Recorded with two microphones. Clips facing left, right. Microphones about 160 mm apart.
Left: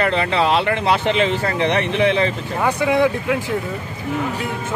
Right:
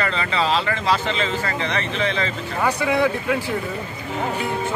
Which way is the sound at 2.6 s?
15° left (ahead or behind).